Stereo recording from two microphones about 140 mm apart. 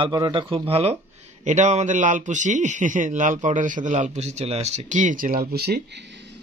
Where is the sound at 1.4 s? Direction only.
60° right (ahead or behind).